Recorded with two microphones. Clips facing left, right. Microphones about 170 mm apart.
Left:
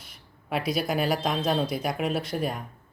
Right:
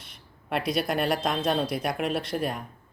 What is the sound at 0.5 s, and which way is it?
Speech, 5° left (ahead or behind).